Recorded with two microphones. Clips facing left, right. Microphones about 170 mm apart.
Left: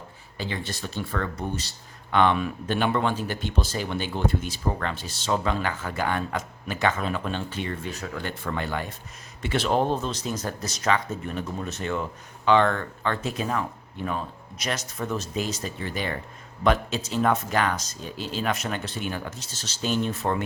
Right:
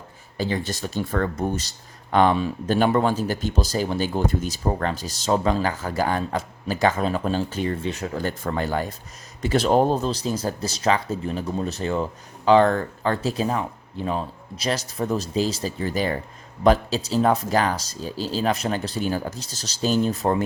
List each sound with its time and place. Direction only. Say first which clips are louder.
0.3 s speech: right 6 dB; 40° right (ahead or behind)
2.1 s speech: right 3 dB; 35° right (ahead or behind)